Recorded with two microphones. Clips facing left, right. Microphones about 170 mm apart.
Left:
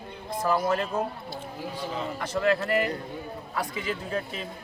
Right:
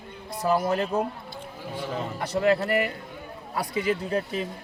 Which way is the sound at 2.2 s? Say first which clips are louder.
Right 3 dB; 35° right (ahead or behind).